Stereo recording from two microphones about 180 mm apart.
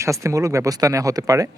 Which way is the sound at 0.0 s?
15° right (ahead or behind).